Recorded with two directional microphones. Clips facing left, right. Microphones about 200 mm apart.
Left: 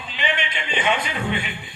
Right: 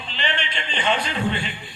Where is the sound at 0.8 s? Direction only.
15° left (ahead or behind).